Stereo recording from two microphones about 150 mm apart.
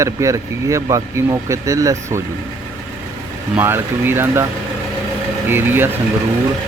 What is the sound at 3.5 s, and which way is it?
Speech, 15° right (ahead or behind).